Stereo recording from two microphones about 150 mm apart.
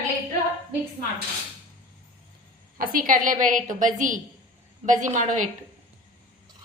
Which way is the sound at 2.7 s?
65° right (ahead or behind).